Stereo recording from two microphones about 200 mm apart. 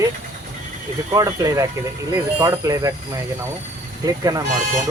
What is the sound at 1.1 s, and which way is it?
Speech, 15° right (ahead or behind).